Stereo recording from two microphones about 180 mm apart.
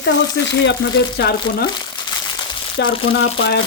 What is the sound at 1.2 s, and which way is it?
Speech, 60° left (ahead or behind).